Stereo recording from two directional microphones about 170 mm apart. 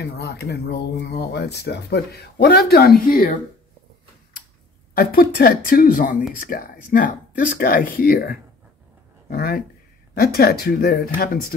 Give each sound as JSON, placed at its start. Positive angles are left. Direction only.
{"t": 0.0, "sound": "speech", "side_deg": 75}
{"t": 4.9, "sound": "speech", "side_deg": 55}